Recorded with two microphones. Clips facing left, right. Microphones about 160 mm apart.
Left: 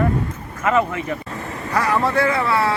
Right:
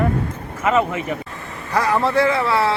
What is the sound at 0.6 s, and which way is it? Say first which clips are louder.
A man's voice: right 1 dB; 15° right (ahead or behind).